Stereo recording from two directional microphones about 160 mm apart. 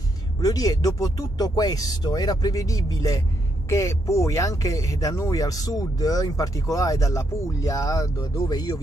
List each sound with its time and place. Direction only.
0.4 s speech: 25° left (ahead or behind)